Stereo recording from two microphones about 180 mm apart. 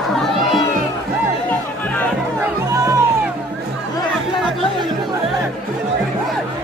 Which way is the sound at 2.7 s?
15° right (ahead or behind).